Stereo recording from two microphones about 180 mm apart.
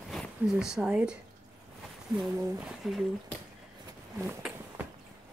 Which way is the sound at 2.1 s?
Centre (ahead or behind).